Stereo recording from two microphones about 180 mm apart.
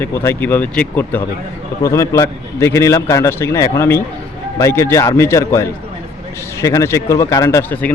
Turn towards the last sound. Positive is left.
turn(degrees=10)  # may be behind; listen again after turning